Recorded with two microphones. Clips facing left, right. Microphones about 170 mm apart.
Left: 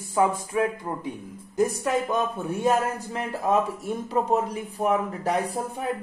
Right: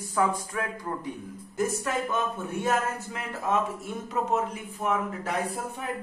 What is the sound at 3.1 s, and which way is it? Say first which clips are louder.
Speech: left 5 dB; 35° left (ahead or behind).